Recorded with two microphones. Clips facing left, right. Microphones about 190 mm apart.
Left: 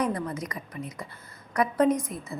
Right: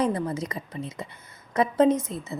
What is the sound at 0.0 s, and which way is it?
A woman's voice, 25° right (ahead or behind).